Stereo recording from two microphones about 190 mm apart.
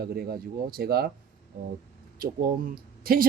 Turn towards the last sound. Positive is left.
turn(degrees=-50)  # may be behind; listen again after turning